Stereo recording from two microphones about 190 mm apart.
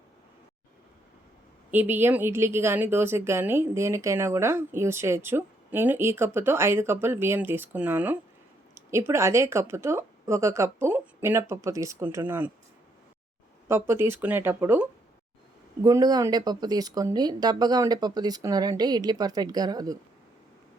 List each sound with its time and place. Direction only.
1.7 s a woman's voice: 10° right (ahead or behind)
13.7 s a woman's voice: 10° right (ahead or behind)